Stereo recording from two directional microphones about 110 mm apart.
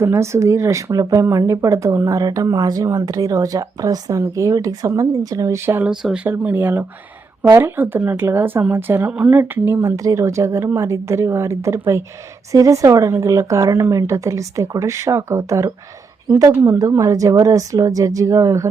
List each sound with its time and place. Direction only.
0.0 s a woman's voice: 25° right (ahead or behind)
5.9 s speech: 5° right (ahead or behind)
6.2 s a woman's voice: 20° right (ahead or behind)
9.8 s a woman's voice: 30° right (ahead or behind)